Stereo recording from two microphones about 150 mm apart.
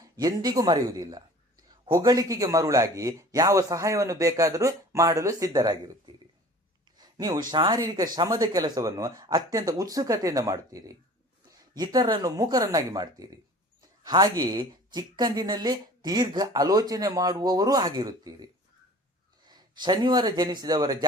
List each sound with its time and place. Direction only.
0.0 s a woman's voice: 25° right (ahead or behind)
7.0 s a sound: 25° right (ahead or behind)
7.5 s a woman's voice: 30° right (ahead or behind)